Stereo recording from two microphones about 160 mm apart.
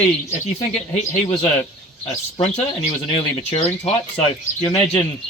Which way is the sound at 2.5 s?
40° left (ahead or behind).